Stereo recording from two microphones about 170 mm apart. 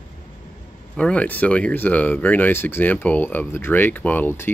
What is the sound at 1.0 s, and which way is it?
Speech, 5° left (ahead or behind).